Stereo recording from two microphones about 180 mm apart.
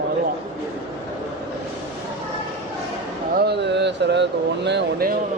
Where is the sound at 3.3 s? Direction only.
65° right (ahead or behind).